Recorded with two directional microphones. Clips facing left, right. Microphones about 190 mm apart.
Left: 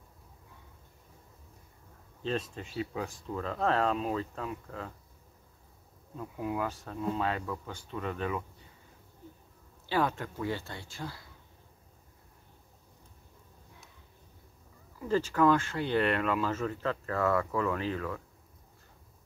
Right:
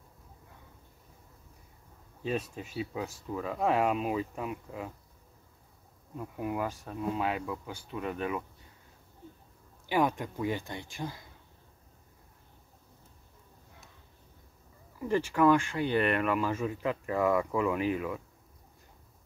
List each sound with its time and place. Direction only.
2.2 s speech: 10° right (ahead or behind)
6.1 s speech: 15° right (ahead or behind)
9.8 s speech: 15° right (ahead or behind)
15.0 s speech: 15° right (ahead or behind)